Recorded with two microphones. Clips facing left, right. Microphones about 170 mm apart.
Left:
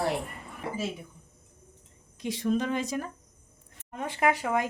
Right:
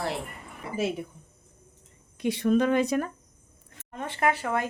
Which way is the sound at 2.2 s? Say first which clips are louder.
Right 5 dB; 60° right (ahead or behind).